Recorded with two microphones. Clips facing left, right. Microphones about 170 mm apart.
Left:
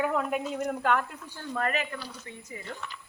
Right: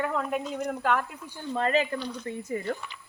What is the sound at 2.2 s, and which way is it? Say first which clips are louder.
Speech: right 11 dB; 50° right (ahead or behind).